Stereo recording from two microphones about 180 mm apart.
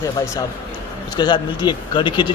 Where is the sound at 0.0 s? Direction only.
20° left (ahead or behind).